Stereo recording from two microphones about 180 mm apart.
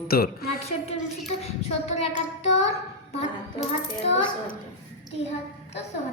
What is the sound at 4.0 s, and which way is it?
Speech, 30° left (ahead or behind).